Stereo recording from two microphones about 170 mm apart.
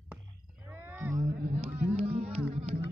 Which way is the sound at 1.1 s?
45° right (ahead or behind).